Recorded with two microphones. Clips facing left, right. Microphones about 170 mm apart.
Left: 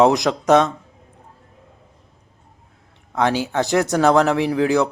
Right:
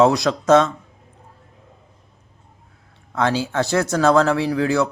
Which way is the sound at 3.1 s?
15° left (ahead or behind).